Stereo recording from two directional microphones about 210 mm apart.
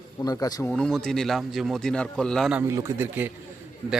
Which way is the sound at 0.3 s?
20° left (ahead or behind).